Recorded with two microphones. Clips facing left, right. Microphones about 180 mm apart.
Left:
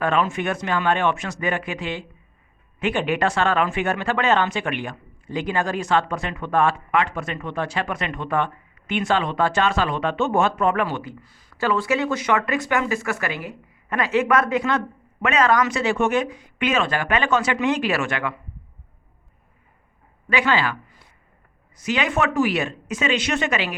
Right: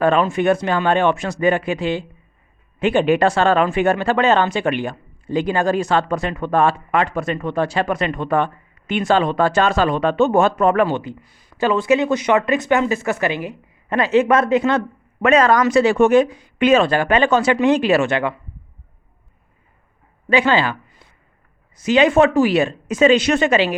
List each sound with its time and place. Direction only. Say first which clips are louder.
0.0 s speech: right 6 dB; 30° right (ahead or behind)
10.8 s speech: right 6 dB; 25° right (ahead or behind)
20.3 s speech: right 5 dB; 30° right (ahead or behind)
21.8 s speech: right 9 dB; 25° right (ahead or behind)